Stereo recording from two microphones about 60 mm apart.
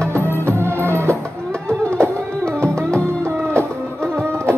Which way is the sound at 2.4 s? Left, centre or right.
Right.